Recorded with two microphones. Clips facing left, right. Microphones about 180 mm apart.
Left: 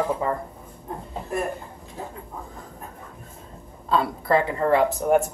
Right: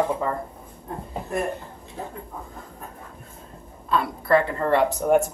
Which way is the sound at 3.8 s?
25° left (ahead or behind).